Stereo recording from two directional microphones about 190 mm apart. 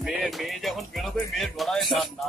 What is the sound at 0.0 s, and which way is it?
Music, centre (ahead or behind).